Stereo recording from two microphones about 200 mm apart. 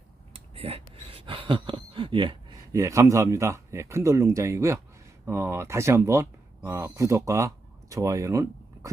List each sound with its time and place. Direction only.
0.3 s speech: 30° right (ahead or behind)